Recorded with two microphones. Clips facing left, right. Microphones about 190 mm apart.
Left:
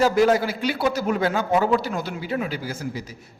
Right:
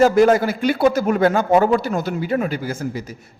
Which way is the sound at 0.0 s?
50° right (ahead or behind).